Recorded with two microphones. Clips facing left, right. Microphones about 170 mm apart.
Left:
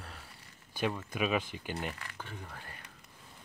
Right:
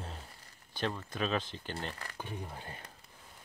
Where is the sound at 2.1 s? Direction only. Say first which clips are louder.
Right 3 dB; 15° right (ahead or behind).